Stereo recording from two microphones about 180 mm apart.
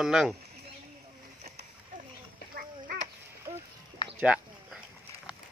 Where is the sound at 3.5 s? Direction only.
35° right (ahead or behind).